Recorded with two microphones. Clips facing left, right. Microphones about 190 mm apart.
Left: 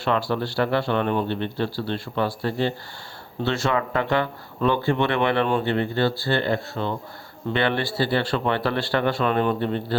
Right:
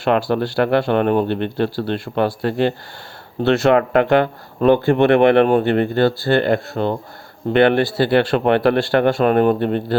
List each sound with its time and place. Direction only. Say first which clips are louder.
0.0 s speech: right 6 dB; 50° right (ahead or behind)